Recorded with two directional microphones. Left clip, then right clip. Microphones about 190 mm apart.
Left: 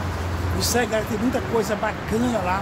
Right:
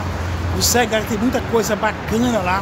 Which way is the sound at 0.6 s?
30° right (ahead or behind).